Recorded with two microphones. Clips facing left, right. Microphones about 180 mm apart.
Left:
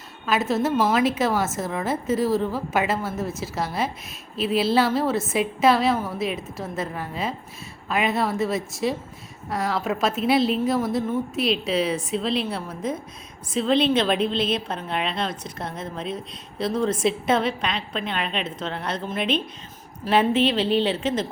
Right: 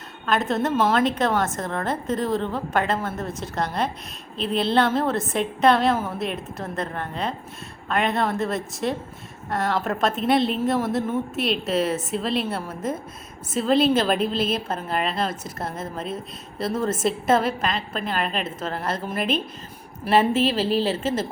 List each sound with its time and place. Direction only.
0.3 s a woman's voice: 5° left (ahead or behind)